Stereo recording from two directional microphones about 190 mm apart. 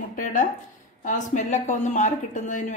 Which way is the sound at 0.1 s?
45° left (ahead or behind).